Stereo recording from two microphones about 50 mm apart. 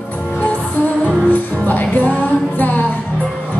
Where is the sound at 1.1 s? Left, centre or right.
Left.